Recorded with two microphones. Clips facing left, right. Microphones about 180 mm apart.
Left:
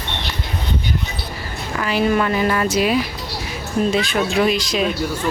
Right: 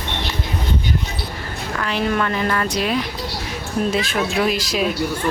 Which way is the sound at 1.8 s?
5° left (ahead or behind).